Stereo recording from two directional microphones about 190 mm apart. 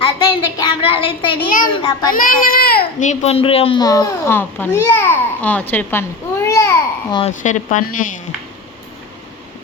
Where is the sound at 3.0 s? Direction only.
35° left (ahead or behind); by 7.2 s 15° left (ahead or behind).